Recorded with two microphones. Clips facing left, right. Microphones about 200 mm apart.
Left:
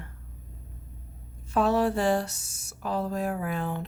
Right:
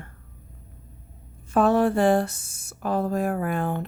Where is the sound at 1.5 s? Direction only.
50° right (ahead or behind).